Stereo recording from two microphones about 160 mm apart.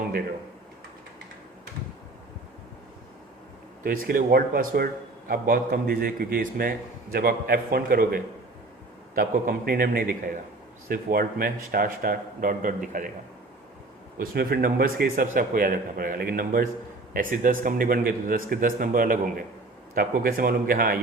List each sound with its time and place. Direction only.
3.8 s a man's voice: 65° right (ahead or behind)
14.2 s a man's voice: 70° right (ahead or behind)